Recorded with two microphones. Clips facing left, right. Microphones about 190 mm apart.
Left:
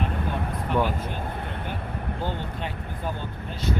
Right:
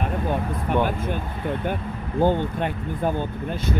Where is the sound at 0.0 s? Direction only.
50° right (ahead or behind).